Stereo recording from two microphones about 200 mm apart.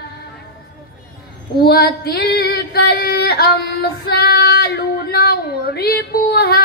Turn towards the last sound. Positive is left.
turn(degrees=50)  # may be behind; listen again after turning